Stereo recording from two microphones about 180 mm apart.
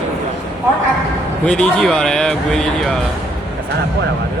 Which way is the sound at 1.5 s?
5° left (ahead or behind).